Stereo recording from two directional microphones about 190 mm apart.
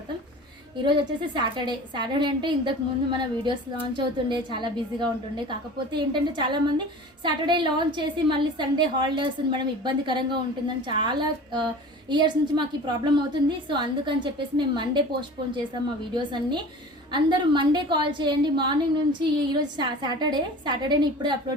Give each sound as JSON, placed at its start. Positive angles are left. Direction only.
{"t": 0.8, "sound": "a woman's voice", "side_deg": -25}
{"t": 16.1, "sound": "a woman's voice", "side_deg": -25}